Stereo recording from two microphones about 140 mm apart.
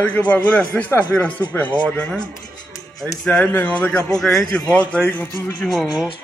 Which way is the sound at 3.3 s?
10° left (ahead or behind).